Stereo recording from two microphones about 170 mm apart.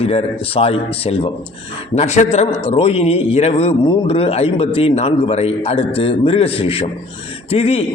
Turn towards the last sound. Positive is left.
turn(degrees=35)  # may be behind; listen again after turning